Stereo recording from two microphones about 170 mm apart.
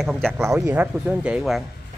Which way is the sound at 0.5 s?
20° right (ahead or behind).